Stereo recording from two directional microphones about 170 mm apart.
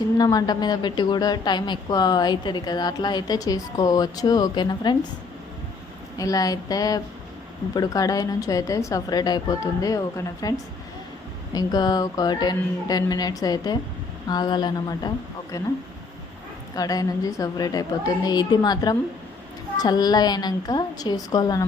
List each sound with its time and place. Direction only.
0.2 s a woman's voice: 20° left (ahead or behind)
6.1 s a woman's voice: 20° left (ahead or behind)
11.5 s a woman's voice: 20° left (ahead or behind)
16.7 s a woman's voice: 20° left (ahead or behind)